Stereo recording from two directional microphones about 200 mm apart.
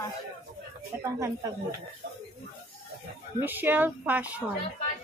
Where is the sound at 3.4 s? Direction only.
10° right (ahead or behind).